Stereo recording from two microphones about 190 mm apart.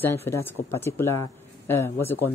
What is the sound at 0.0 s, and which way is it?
Speech, 15° left (ahead or behind).